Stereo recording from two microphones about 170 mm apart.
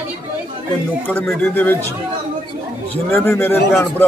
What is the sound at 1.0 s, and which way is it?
Speech, 10° left (ahead or behind).